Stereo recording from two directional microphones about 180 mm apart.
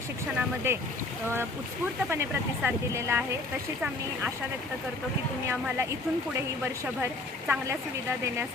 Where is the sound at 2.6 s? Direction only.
15° right (ahead or behind).